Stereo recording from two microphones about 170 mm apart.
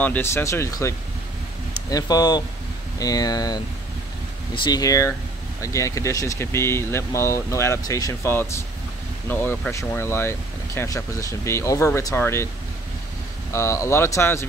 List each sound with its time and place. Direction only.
0.0 s speech: 10° left (ahead or behind)
4.6 s speech: 20° left (ahead or behind)
13.5 s speech: 15° left (ahead or behind)